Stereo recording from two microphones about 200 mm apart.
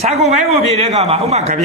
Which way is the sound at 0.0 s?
30° right (ahead or behind).